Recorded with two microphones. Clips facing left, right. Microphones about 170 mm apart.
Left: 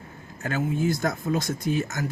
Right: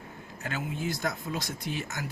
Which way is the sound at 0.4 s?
45° left (ahead or behind).